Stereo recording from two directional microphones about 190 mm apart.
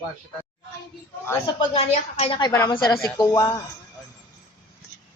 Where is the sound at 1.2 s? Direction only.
25° left (ahead or behind).